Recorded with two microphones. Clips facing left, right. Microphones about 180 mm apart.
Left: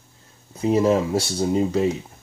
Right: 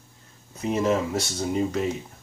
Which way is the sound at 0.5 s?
30° left (ahead or behind).